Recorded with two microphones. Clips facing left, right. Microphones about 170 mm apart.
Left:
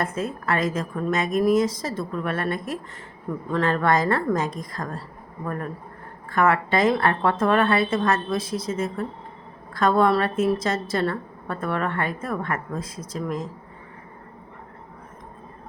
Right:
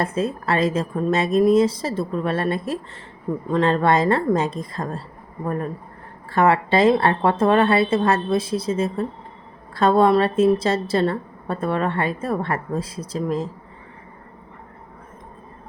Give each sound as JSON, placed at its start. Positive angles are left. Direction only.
{"t": 0.0, "sound": "a woman's voice", "side_deg": -30}